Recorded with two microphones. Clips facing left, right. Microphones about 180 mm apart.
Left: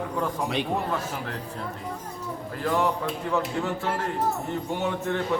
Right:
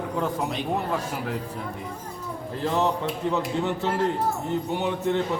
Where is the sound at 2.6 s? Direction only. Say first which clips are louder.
Right 1 dB; 25° right (ahead or behind).